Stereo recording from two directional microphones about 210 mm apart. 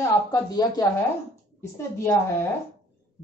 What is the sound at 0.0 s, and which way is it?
A woman's voice, 15° left (ahead or behind).